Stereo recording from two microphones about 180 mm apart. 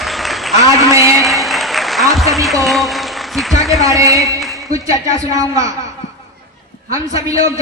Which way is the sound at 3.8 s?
20° right (ahead or behind).